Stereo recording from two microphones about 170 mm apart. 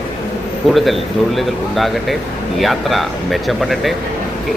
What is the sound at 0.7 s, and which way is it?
Speech, centre (ahead or behind).